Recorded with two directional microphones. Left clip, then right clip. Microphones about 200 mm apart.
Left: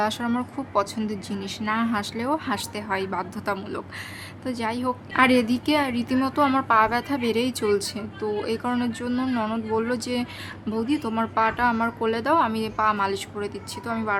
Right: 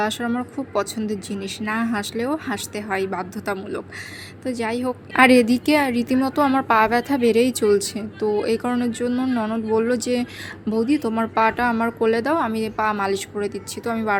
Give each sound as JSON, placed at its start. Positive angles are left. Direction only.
{"t": 0.0, "sound": "speech", "side_deg": -10}
{"t": 5.1, "sound": "a woman's voice", "side_deg": -20}